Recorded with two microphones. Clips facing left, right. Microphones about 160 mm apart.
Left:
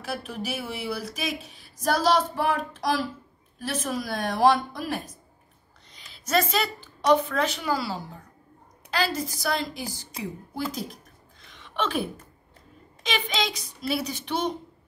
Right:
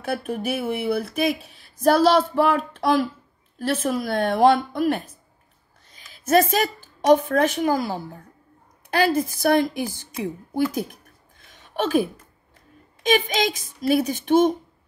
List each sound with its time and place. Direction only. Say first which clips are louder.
0.0 s speech: right 6 dB; 55° right (ahead or behind)
6.1 s a woman's voice: right 6 dB; 50° right (ahead or behind)
13.0 s a woman's voice: right 7 dB; 50° right (ahead or behind)